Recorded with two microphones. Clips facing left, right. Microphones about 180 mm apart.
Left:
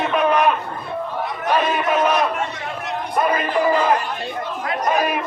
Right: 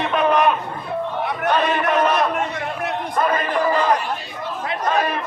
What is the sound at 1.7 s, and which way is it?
Crowd, 10° left (ahead or behind).